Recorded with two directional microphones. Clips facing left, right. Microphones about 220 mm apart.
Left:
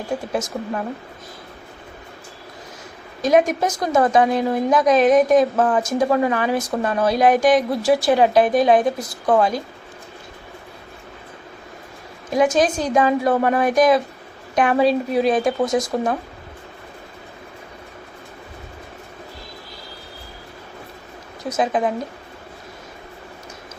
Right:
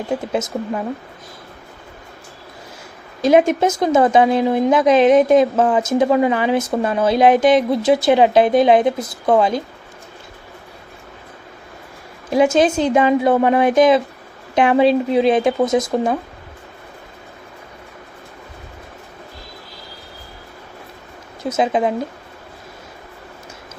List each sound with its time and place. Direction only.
0.1 s a woman's voice: 20° right (ahead or behind)
3.2 s a woman's voice: 25° right (ahead or behind)
12.3 s a woman's voice: 25° right (ahead or behind)
21.5 s a woman's voice: 25° right (ahead or behind)